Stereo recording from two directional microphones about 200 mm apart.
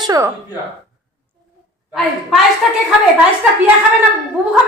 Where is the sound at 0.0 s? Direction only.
20° right (ahead or behind).